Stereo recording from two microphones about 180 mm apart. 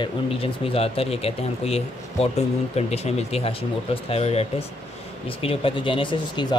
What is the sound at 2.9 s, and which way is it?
Speech, 35° left (ahead or behind).